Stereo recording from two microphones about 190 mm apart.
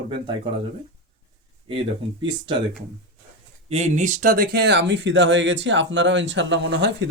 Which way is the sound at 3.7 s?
35° right (ahead or behind).